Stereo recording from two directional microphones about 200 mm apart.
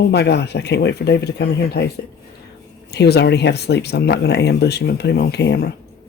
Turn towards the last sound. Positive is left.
turn(degrees=60)  # may be behind; listen again after turning